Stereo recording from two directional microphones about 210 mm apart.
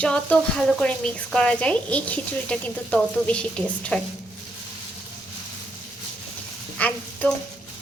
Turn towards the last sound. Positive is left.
turn(degrees=5)  # may be behind; listen again after turning